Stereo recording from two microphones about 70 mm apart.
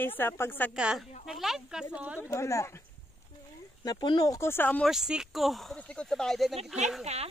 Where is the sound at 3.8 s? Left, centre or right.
Left.